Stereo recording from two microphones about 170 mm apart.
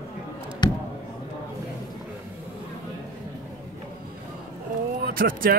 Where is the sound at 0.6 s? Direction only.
25° left (ahead or behind).